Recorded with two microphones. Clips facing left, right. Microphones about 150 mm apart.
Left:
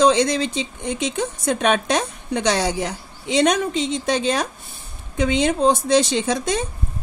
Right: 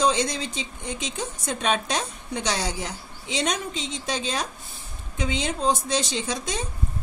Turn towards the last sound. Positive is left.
turn(degrees=60)  # may be behind; listen again after turning